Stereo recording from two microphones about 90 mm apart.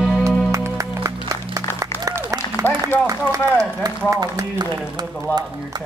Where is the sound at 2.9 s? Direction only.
20° left (ahead or behind).